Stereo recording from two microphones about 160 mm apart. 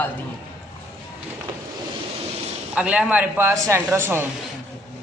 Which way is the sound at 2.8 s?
10° right (ahead or behind).